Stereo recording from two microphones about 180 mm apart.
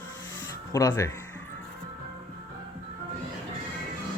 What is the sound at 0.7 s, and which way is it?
Speech, 15° left (ahead or behind).